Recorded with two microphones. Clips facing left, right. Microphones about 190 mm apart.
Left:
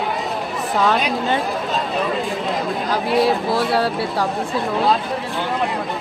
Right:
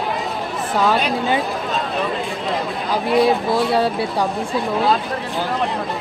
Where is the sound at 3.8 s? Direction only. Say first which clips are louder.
Right 1 dB; 20° right (ahead or behind).